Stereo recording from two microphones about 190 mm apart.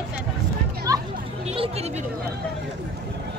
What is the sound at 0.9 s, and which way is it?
Children playing, 15° right (ahead or behind).